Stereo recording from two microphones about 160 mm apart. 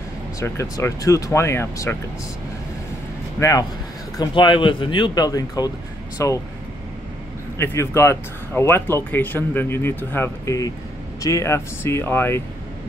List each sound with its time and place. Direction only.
0.4 s speech: 20° left (ahead or behind)
3.3 s speech: 20° left (ahead or behind)
4.2 s speech: 30° left (ahead or behind)
7.5 s speech: 15° left (ahead or behind)